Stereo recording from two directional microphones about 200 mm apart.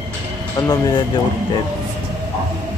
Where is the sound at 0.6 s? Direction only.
20° left (ahead or behind).